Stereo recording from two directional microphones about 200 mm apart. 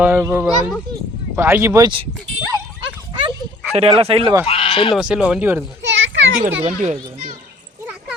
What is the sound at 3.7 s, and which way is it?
Speech, 30° right (ahead or behind).